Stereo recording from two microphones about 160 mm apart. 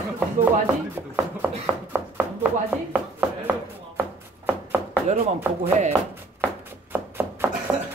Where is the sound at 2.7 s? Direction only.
10° right (ahead or behind).